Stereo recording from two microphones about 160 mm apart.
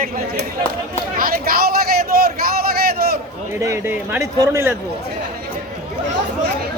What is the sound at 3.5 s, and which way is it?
Speech, 20° right (ahead or behind).